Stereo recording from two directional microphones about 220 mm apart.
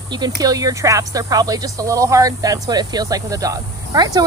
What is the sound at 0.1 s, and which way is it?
Speech, 15° right (ahead or behind).